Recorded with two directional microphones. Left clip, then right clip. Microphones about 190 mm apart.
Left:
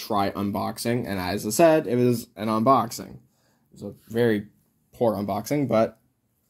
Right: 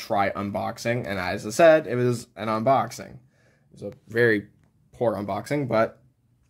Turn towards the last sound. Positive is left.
turn(degrees=-10)  # may be behind; listen again after turning